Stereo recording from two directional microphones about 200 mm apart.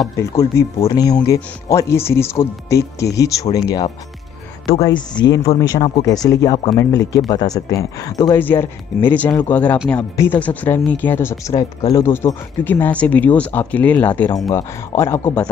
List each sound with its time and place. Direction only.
0.2 s speech: 15° left (ahead or behind)
4.8 s speech: 20° left (ahead or behind)